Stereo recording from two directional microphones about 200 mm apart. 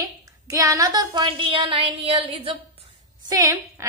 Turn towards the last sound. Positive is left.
turn(degrees=-15)  # may be behind; listen again after turning